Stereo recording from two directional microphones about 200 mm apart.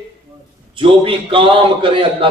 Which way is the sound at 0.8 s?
25° right (ahead or behind).